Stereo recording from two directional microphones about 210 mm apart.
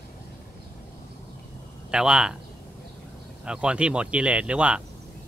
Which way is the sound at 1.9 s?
5° right (ahead or behind).